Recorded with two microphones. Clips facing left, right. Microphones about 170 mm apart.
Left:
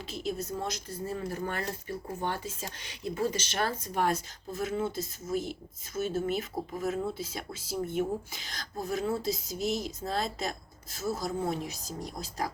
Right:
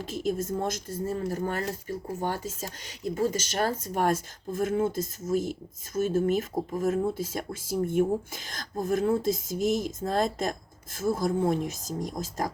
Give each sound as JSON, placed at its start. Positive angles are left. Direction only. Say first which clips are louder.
{"t": 0.0, "sound": "a woman's voice", "louder": "right 5 dB", "side_deg": -50}